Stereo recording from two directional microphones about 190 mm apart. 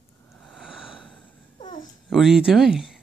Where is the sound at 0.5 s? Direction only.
Centre (ahead or behind).